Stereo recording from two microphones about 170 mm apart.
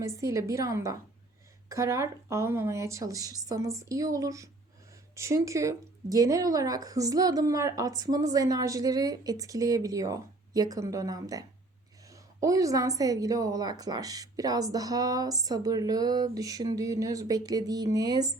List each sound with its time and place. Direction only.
0.0 s a woman's voice: 15° right (ahead or behind)